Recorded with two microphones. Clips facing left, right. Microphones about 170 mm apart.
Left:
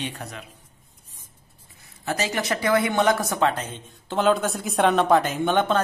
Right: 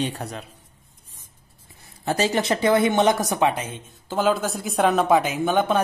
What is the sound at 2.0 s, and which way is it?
Speech, 30° right (ahead or behind).